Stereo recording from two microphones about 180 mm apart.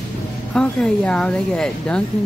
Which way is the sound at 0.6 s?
5° left (ahead or behind).